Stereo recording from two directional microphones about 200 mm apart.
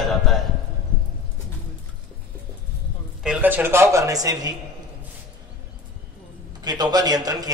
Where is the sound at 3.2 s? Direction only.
5° right (ahead or behind).